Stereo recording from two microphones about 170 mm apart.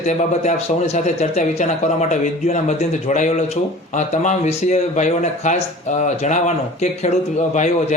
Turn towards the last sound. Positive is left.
turn(degrees=40)  # may be behind; listen again after turning